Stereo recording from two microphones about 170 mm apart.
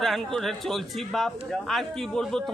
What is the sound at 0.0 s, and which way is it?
A man's voice, centre (ahead or behind).